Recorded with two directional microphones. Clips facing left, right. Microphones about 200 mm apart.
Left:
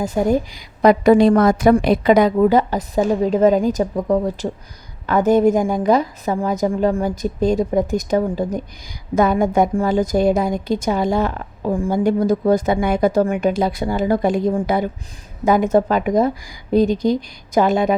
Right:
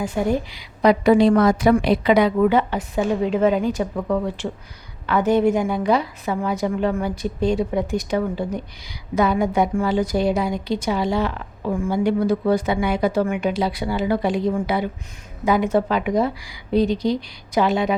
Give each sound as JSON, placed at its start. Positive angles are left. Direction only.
{"t": 0.0, "sound": "a woman's voice", "side_deg": 40}